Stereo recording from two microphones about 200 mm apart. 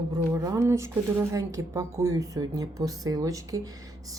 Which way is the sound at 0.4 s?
15° right (ahead or behind).